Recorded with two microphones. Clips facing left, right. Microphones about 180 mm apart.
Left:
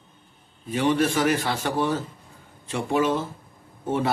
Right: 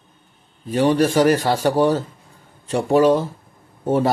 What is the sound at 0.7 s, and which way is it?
A man's voice, 40° right (ahead or behind).